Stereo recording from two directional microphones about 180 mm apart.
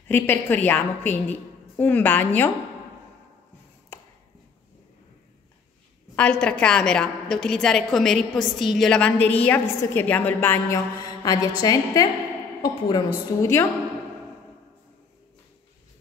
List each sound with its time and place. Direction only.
0.1 s a woman's voice: 10° left (ahead or behind)
6.1 s a woman's voice: 5° left (ahead or behind)